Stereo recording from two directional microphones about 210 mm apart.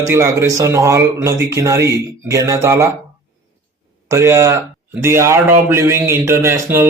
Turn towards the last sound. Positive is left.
turn(degrees=-10)  # may be behind; listen again after turning